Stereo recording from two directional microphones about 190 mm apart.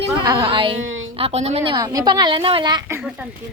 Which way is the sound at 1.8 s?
20° right (ahead or behind).